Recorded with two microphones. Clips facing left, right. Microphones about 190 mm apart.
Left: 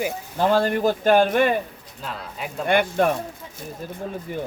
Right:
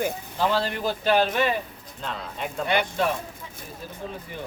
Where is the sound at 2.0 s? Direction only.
5° left (ahead or behind).